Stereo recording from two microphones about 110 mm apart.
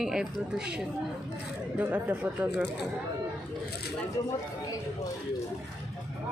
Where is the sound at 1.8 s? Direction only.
15° right (ahead or behind).